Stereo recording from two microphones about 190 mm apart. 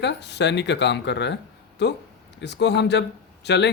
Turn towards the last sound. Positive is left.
turn(degrees=65)  # may be behind; listen again after turning